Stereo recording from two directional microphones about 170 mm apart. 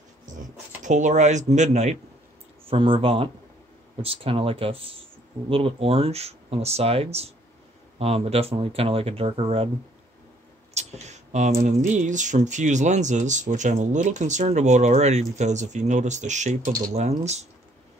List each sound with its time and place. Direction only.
0.8 s speech: 45° right (ahead or behind)
2.7 s speech: 30° right (ahead or behind)
10.7 s speech: 40° right (ahead or behind)